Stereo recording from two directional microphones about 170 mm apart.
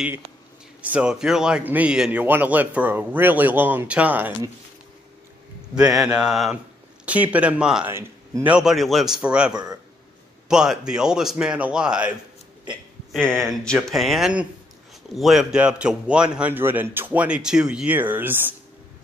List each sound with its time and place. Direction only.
0.8 s a man's voice: 5° right (ahead or behind)
5.8 s a man's voice: 5° right (ahead or behind)
8.5 s speech: centre (ahead or behind)
9.5 s speech: 20° right (ahead or behind)
10.5 s speech: 5° right (ahead or behind)
13.1 s a man's voice: 5° left (ahead or behind)